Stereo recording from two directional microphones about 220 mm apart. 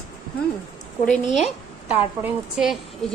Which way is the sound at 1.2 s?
30° left (ahead or behind).